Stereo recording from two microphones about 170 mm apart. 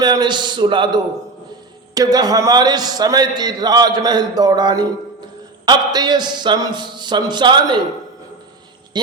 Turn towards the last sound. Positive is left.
turn(degrees=-25)  # may be behind; listen again after turning